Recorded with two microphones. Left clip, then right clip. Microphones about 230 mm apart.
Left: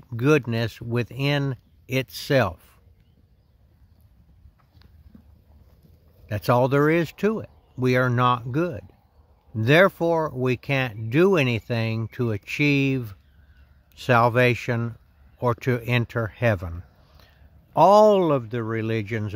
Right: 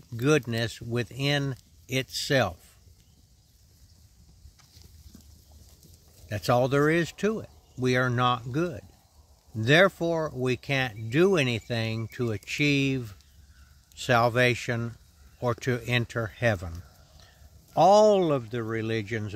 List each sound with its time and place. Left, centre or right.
0.1 s speech: left
6.2 s speech: left
17.7 s speech: left